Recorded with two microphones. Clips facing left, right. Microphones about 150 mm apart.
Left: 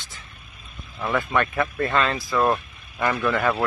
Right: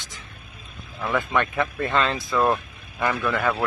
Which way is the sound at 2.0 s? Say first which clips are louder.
Right 1 dB; 25° right (ahead or behind).